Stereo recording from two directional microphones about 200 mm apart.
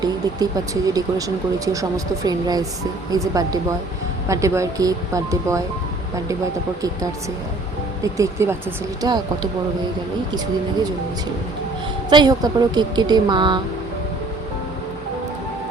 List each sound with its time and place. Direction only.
0.0 s speech: 20° right (ahead or behind)
8.0 s speech: 15° right (ahead or behind)
12.0 s speech: 20° right (ahead or behind)